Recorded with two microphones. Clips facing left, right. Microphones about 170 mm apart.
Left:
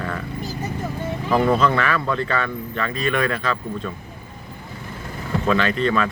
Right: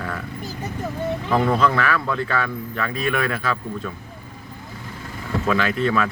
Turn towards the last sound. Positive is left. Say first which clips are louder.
# left 1 dB
turn(degrees=-5)  # may be behind; listen again after turning